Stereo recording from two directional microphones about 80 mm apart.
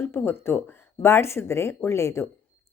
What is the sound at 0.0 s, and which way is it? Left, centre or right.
Speech, left.